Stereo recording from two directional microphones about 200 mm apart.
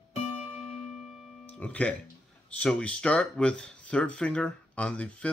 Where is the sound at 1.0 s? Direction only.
5° right (ahead or behind).